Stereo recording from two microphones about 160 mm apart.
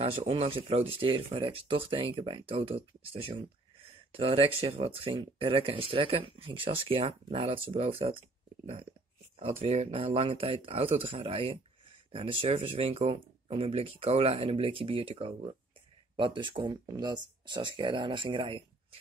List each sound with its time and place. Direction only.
0.0 s speech: 35° right (ahead or behind)
9.4 s speech: 40° right (ahead or behind)